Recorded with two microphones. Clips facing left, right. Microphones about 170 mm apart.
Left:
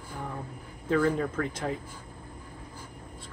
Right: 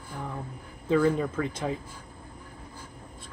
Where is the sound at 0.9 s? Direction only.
15° right (ahead or behind).